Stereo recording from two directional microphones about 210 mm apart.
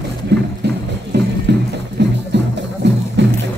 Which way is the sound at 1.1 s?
55° right (ahead or behind).